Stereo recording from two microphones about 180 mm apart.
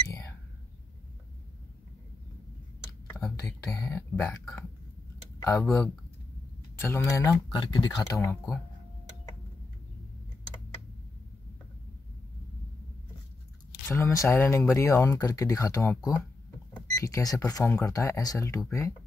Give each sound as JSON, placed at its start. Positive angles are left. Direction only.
{"t": 3.3, "sound": "speech", "side_deg": 15}
{"t": 4.3, "sound": "speech", "side_deg": 0}
{"t": 5.4, "sound": "speech", "side_deg": 15}
{"t": 13.8, "sound": "speech", "side_deg": 15}